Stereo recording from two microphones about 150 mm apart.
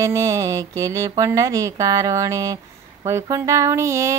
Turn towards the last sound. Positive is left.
turn(degrees=-20)  # may be behind; listen again after turning